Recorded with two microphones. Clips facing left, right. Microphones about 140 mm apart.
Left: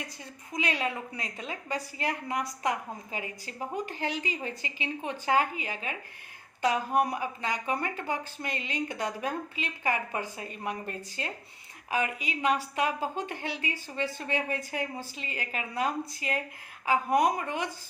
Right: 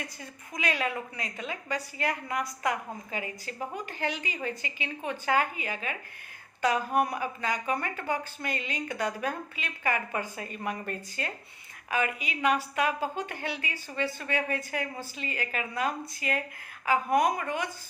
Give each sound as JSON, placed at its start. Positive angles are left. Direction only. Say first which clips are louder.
{"t": 0.5, "sound": "a woman's voice", "louder": "even", "side_deg": 25}
{"t": 7.1, "sound": "a woman's voice", "louder": "right 1 dB", "side_deg": 25}